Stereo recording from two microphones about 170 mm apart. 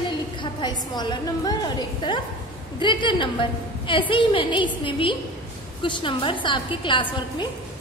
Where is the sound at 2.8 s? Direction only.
30° left (ahead or behind).